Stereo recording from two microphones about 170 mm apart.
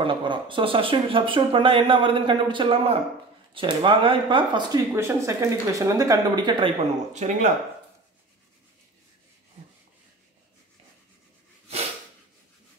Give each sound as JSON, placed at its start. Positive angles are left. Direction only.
{"t": 0.0, "sound": "speech", "side_deg": -30}
{"t": 7.2, "sound": "speech", "side_deg": -45}